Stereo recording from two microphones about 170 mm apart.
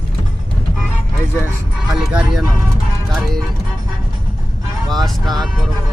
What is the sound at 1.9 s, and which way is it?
Speech, 5° right (ahead or behind).